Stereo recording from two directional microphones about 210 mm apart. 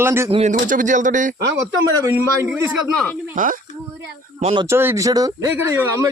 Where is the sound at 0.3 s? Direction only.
30° right (ahead or behind).